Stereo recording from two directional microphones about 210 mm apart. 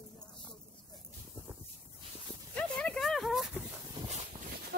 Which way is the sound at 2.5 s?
5° left (ahead or behind).